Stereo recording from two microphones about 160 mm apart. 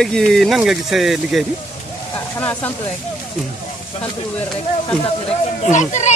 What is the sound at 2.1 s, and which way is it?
Speech, 10° left (ahead or behind).